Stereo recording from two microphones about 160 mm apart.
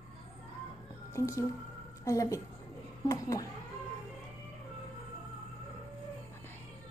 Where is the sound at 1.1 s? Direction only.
20° left (ahead or behind).